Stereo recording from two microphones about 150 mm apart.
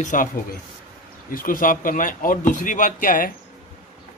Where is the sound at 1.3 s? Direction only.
65° left (ahead or behind).